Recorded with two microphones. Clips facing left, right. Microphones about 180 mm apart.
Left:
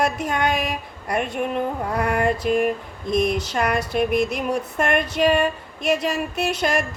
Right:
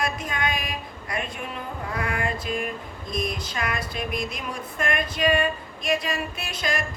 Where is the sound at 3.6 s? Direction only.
50° left (ahead or behind).